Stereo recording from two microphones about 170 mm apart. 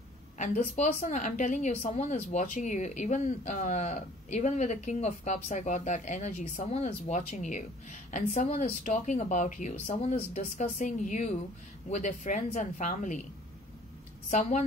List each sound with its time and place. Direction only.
0.7 s speech: 45° left (ahead or behind)